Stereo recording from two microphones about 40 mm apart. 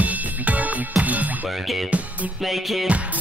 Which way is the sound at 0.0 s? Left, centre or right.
Right.